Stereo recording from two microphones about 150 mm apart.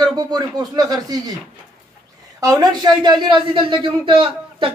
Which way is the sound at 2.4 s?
25° right (ahead or behind).